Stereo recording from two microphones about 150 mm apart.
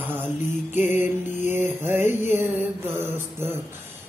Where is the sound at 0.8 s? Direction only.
15° right (ahead or behind).